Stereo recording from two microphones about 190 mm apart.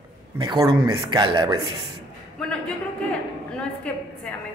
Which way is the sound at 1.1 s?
25° right (ahead or behind).